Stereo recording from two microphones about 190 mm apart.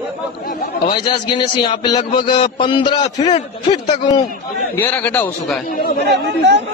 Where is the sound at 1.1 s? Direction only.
25° left (ahead or behind).